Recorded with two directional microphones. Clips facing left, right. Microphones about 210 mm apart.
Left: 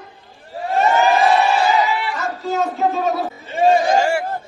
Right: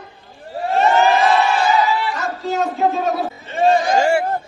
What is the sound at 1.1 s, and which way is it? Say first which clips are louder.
Crowd: left 1 dB; 15° left (ahead or behind).